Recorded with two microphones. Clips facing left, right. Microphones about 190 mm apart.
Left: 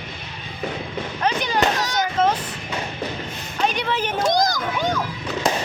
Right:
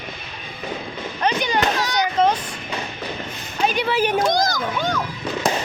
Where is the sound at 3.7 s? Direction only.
5° right (ahead or behind).